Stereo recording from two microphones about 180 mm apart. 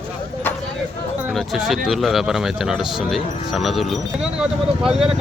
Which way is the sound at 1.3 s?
Centre (ahead or behind).